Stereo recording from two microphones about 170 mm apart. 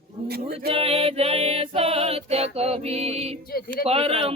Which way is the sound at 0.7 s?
35° right (ahead or behind).